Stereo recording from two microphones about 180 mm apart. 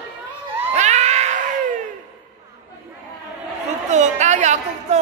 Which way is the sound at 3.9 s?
40° right (ahead or behind).